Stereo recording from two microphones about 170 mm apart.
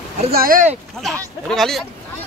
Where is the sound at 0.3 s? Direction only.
60° right (ahead or behind).